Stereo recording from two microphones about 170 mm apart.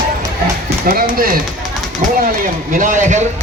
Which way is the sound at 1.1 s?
55° right (ahead or behind).